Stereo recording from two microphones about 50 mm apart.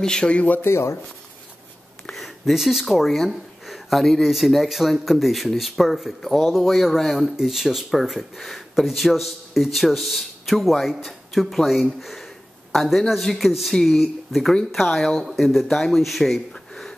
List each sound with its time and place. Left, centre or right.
0.0 s speech: centre
0.6 s speech: left
2.1 s speech: centre
16.5 s a sound: centre